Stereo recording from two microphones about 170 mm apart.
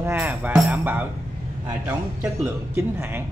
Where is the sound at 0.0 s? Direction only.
15° right (ahead or behind).